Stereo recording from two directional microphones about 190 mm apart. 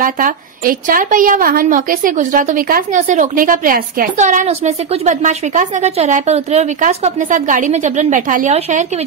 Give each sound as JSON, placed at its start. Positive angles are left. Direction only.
{"t": 0.0, "sound": "a woman's voice", "side_deg": -45}